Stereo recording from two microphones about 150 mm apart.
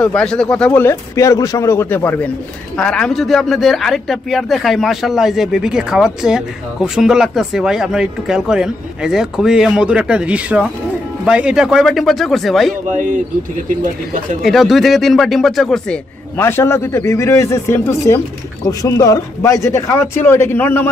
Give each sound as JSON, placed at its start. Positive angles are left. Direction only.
{"t": 0.0, "sound": "a man's voice", "side_deg": 5}
{"t": 14.4, "sound": "a man's voice", "side_deg": 0}
{"t": 16.3, "sound": "speech", "side_deg": 15}